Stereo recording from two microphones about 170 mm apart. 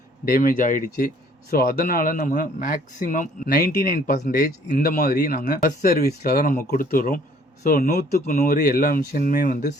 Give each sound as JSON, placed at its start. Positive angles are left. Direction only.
{"t": 0.3, "sound": "speech", "side_deg": 55}